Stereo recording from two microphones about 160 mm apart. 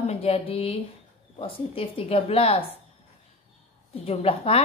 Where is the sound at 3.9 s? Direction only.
35° left (ahead or behind).